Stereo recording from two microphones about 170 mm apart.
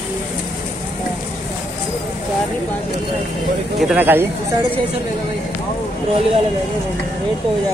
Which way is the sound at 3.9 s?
10° right (ahead or behind).